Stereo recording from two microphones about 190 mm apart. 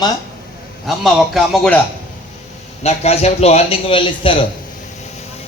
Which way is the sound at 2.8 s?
35° left (ahead or behind).